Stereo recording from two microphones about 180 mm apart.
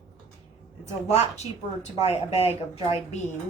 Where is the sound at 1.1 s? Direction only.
35° left (ahead or behind).